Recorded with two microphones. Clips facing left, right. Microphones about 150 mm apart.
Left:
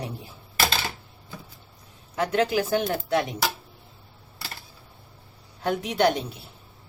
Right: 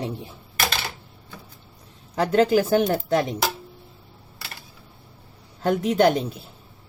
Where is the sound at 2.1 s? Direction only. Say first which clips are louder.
Right 5 dB; 35° right (ahead or behind).